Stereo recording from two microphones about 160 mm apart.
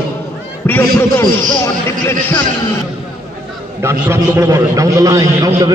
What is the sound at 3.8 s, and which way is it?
A man's voice, 15° right (ahead or behind).